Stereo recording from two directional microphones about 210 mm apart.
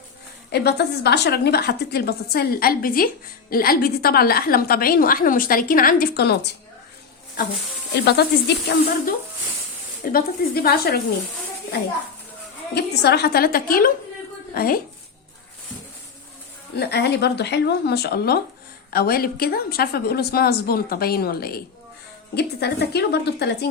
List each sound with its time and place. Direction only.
0.5 s a woman's voice: 50° left (ahead or behind)
7.9 s a woman's voice: 50° left (ahead or behind)
10.0 s a woman's voice: 45° left (ahead or behind)
12.7 s a woman's voice: 50° left (ahead or behind)
16.7 s a woman's voice: 50° left (ahead or behind)